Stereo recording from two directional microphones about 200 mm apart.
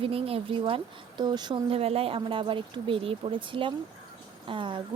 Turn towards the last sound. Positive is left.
turn(degrees=-25)  # may be behind; listen again after turning